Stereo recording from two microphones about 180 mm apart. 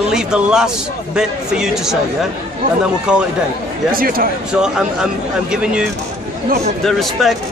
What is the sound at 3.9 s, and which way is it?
Speech, 55° right (ahead or behind).